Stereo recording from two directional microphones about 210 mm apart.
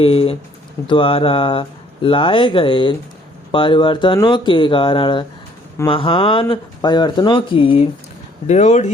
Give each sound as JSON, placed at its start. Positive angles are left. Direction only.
{"t": 0.0, "sound": "speech", "side_deg": 25}